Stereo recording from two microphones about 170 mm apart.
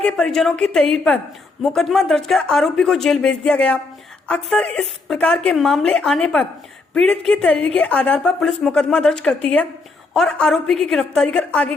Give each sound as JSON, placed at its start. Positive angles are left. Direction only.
{"t": 0.0, "sound": "a woman's voice", "side_deg": 5}